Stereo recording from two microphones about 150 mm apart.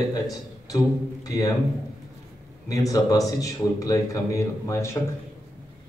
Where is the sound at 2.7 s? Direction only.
25° left (ahead or behind).